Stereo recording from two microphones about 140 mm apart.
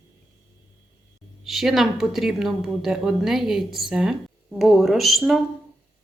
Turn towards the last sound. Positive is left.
turn(degrees=0)  # may be behind; listen again after turning